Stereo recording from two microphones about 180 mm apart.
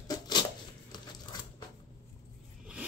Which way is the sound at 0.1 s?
25° left (ahead or behind).